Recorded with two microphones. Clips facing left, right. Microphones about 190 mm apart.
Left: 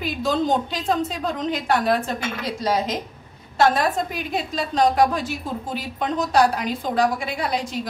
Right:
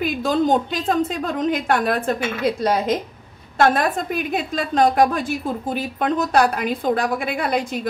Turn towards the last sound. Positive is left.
turn(degrees=-55)  # may be behind; listen again after turning